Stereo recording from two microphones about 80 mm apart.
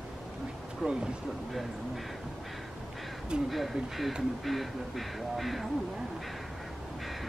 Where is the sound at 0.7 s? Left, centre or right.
Centre.